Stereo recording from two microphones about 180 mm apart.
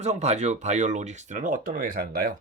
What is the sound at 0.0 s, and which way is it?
Speech, 40° right (ahead or behind).